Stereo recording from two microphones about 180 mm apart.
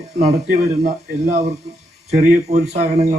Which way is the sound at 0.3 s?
55° right (ahead or behind).